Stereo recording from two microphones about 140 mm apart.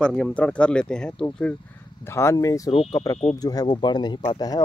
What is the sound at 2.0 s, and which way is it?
Speech, 20° left (ahead or behind).